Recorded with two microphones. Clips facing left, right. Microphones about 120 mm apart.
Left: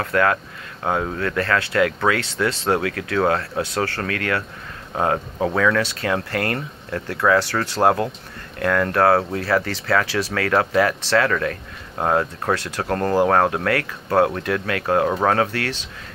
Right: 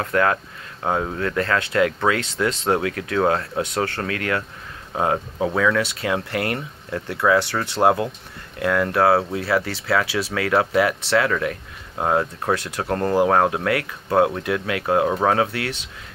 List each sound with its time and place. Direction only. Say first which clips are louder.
0.0 s speech: left 1 dB; 20° right (ahead or behind)